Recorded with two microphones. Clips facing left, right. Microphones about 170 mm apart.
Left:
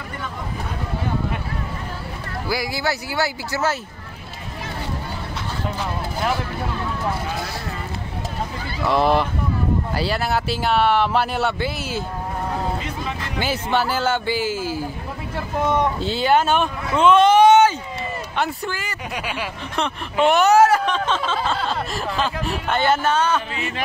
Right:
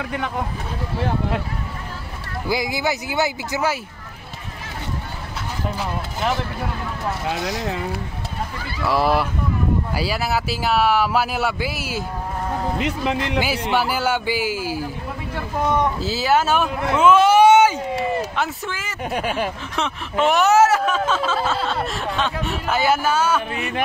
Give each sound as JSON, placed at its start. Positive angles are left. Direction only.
{"t": 2.4, "sound": "speech", "side_deg": -20}
{"t": 8.8, "sound": "a man's voice", "side_deg": -5}
{"t": 12.7, "sound": "speech", "side_deg": -70}
{"t": 13.4, "sound": "a man's voice", "side_deg": -10}
{"t": 19.1, "sound": "speech", "side_deg": -45}
{"t": 19.7, "sound": "speech", "side_deg": 0}